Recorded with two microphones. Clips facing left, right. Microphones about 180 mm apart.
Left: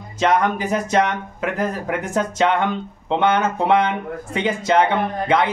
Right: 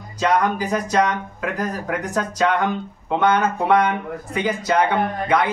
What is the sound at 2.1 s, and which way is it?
Speech, 25° left (ahead or behind).